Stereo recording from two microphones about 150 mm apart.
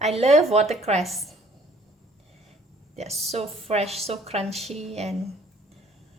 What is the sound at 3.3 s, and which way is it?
A woman's voice, 45° right (ahead or behind).